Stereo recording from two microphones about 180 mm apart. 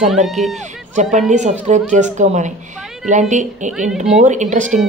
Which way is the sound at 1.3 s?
40° right (ahead or behind).